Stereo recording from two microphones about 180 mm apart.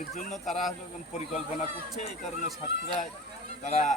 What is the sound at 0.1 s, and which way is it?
Speech, 40° left (ahead or behind).